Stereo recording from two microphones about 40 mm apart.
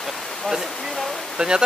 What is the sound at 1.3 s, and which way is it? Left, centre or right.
Speech, centre.